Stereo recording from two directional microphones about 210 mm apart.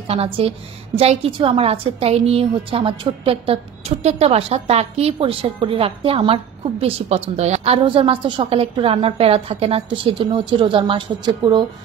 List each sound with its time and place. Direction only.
0.1 s a woman's voice: 30° right (ahead or behind)